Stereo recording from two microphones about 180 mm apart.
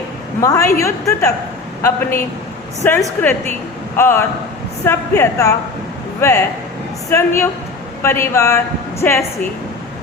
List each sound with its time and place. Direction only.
0.4 s a man's voice: 15° left (ahead or behind)